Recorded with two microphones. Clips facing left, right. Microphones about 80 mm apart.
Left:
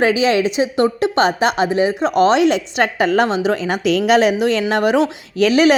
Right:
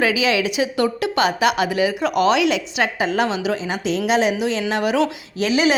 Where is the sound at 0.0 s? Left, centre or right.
Left.